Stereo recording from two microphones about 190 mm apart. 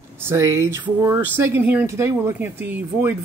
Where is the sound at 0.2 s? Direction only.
15° right (ahead or behind).